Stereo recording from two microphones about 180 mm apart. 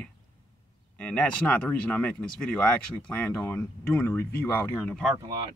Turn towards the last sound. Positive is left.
turn(degrees=-20)  # may be behind; listen again after turning